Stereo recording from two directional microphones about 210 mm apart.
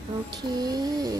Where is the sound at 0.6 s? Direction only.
20° right (ahead or behind).